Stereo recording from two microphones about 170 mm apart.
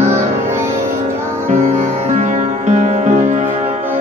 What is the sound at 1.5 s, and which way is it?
Music, 45° right (ahead or behind).